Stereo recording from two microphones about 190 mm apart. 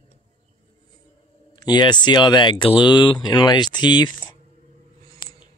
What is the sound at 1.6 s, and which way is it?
Speech, 20° left (ahead or behind).